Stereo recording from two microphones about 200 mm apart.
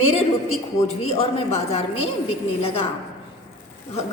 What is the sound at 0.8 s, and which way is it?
Speech, 30° left (ahead or behind).